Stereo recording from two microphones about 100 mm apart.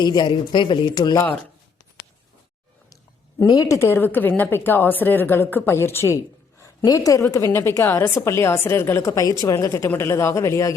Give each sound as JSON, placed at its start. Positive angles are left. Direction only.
{"t": 0.0, "sound": "a man's voice", "side_deg": 45}
{"t": 2.9, "sound": "a woman's voice", "side_deg": 35}